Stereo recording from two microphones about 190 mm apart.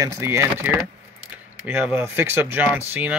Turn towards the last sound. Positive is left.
turn(degrees=-10)  # may be behind; listen again after turning